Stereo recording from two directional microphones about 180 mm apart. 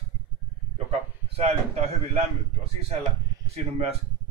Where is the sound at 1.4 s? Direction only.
35° right (ahead or behind).